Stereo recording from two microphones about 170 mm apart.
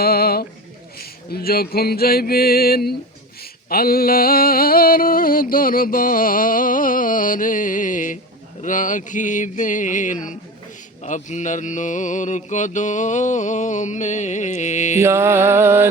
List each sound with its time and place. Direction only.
0.0 s a sound: 65° left (ahead or behind)
8.6 s mantra: 50° left (ahead or behind)
14.9 s music: 15° right (ahead or behind)